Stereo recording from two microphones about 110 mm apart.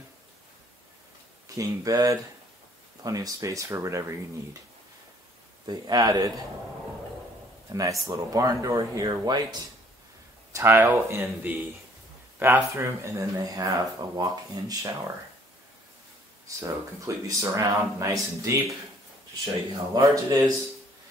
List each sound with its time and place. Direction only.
1.5 s speech: 30° right (ahead or behind)
5.7 s speech: 35° right (ahead or behind)
7.7 s speech: 35° right (ahead or behind)
10.5 s speech: 25° right (ahead or behind)
16.4 s speech: 30° right (ahead or behind)